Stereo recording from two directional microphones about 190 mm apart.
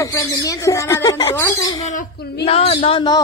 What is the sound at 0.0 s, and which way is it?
Speech, 15° left (ahead or behind).